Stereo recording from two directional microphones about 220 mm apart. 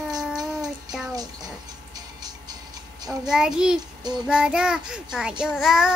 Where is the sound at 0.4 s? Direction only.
15° right (ahead or behind).